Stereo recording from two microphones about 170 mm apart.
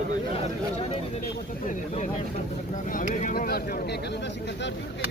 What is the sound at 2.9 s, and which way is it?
Speech, 50° left (ahead or behind).